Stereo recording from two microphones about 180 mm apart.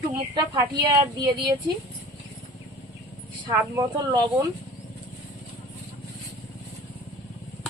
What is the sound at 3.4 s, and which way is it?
Speech, 20° right (ahead or behind).